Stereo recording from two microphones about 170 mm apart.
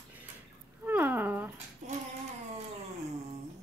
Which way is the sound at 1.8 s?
45° right (ahead or behind).